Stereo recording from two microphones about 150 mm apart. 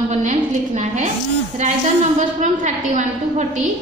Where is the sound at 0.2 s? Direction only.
50° right (ahead or behind).